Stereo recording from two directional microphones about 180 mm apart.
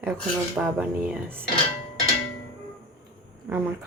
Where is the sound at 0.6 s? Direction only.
5° right (ahead or behind).